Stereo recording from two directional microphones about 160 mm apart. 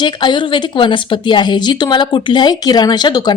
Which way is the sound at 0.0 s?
30° left (ahead or behind).